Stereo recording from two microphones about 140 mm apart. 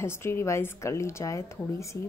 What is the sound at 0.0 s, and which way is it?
A woman's voice, 15° left (ahead or behind).